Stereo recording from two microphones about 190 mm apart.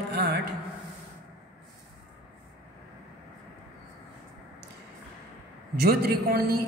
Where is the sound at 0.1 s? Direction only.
60° right (ahead or behind).